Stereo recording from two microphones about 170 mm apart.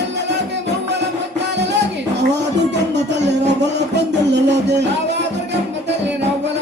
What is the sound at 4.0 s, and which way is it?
Music, 90° right.